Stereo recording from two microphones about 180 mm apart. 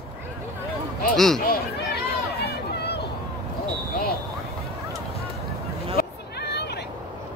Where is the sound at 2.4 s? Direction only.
65° left (ahead or behind).